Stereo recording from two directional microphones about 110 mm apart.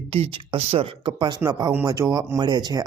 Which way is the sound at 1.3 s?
30° right (ahead or behind).